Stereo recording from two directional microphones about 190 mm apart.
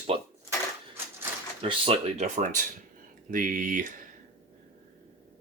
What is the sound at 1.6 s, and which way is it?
Speech, 30° right (ahead or behind).